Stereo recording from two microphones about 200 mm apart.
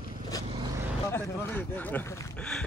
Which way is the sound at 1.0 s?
15° left (ahead or behind).